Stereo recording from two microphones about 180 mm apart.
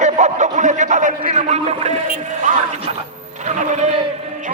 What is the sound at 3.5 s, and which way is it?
Speech, 40° right (ahead or behind).